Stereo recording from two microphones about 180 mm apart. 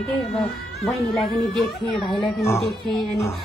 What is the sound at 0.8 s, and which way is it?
Speech, centre (ahead or behind).